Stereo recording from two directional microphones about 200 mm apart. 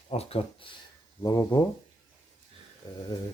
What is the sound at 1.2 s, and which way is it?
Speech, 20° left (ahead or behind).